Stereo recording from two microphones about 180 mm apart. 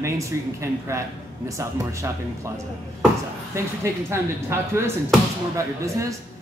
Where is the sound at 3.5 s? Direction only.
15° right (ahead or behind).